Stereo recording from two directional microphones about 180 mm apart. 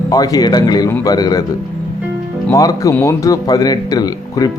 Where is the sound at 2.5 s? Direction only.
20° left (ahead or behind).